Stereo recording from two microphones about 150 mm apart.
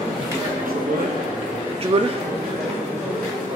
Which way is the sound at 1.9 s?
40° right (ahead or behind).